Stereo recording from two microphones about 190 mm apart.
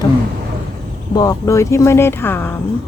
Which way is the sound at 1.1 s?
20° left (ahead or behind).